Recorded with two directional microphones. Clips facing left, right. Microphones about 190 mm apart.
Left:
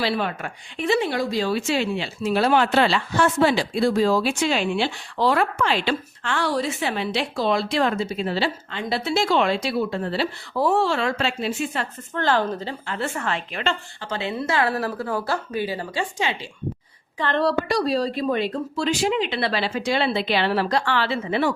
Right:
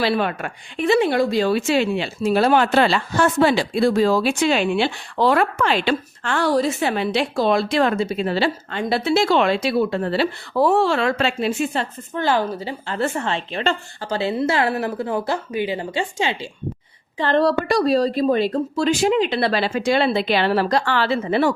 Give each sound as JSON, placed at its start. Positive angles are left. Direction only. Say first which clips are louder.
{"t": 0.0, "sound": "speech", "louder": "right 4 dB", "side_deg": -60}
{"t": 3.5, "sound": "speech", "louder": "right 3 dB", "side_deg": -60}
{"t": 12.1, "sound": "speech", "louder": "right 1 dB", "side_deg": -10}
{"t": 12.9, "sound": "a woman's voice", "louder": "right 4 dB", "side_deg": -30}